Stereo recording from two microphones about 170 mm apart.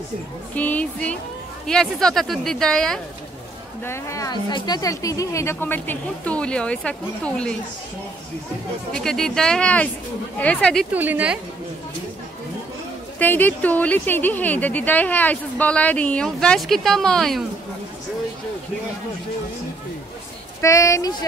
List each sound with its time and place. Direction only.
0.6 s speech: 10° left (ahead or behind)
3.8 s speech: 15° left (ahead or behind)
8.9 s speech: 5° left (ahead or behind)
10.9 s a woman's voice: 10° right (ahead or behind)
13.2 s speech: 10° left (ahead or behind)
20.6 s speech: 20° left (ahead or behind)